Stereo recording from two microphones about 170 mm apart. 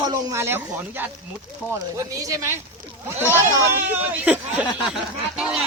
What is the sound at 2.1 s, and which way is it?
Speech, 20° right (ahead or behind).